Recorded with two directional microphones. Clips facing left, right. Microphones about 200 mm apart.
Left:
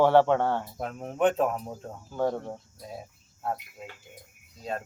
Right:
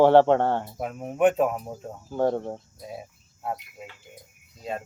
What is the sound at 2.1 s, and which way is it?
Speech, 20° right (ahead or behind).